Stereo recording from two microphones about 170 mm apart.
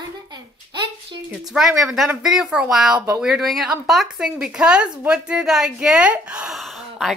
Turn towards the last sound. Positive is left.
turn(degrees=0)  # may be behind; listen again after turning